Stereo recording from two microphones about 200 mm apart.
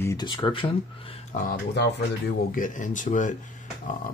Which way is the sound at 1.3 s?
55° left (ahead or behind).